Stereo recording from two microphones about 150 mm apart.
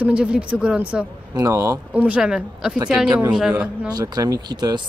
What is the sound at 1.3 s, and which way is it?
Speech, 20° right (ahead or behind).